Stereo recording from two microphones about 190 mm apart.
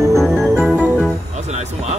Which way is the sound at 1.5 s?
35° right (ahead or behind).